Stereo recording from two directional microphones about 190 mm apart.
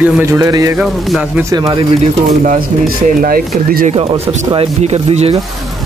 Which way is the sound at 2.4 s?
50° right (ahead or behind).